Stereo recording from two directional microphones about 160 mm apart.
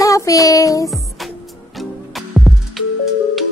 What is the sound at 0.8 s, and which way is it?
Music, centre (ahead or behind).